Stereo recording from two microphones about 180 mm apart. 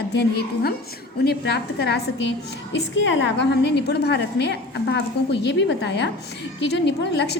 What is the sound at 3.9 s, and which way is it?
A woman's voice, 65° left (ahead or behind).